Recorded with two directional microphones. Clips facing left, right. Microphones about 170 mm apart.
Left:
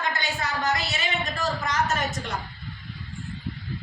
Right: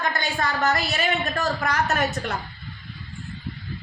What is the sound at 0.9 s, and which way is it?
A man's voice, 60° right (ahead or behind).